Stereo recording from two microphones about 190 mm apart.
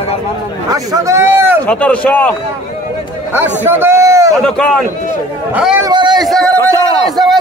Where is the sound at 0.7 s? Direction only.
15° right (ahead or behind).